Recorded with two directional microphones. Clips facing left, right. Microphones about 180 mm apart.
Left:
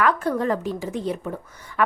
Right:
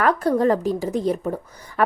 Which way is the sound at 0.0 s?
35° right (ahead or behind).